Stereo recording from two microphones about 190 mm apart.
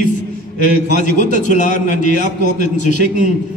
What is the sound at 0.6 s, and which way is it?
A man's voice, 40° left (ahead or behind).